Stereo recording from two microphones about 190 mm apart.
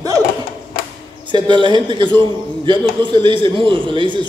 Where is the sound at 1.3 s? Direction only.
25° right (ahead or behind).